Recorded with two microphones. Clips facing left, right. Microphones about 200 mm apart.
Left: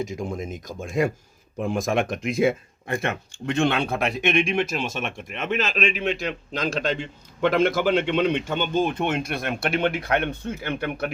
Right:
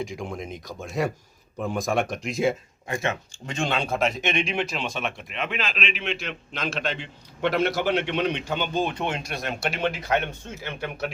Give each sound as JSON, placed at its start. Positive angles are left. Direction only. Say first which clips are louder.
{"t": 0.0, "sound": "a man's voice", "louder": "left 3 dB", "side_deg": 45}